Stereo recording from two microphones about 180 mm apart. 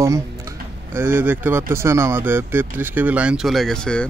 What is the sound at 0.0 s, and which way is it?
Speech, 15° right (ahead or behind).